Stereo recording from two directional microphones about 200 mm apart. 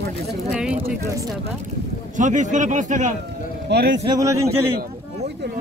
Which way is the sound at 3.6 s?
55° right (ahead or behind).